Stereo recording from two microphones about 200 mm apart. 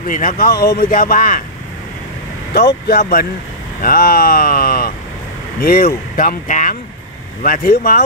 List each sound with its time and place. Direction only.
0.0 s speech: 40° left (ahead or behind)
2.5 s speech: 50° left (ahead or behind)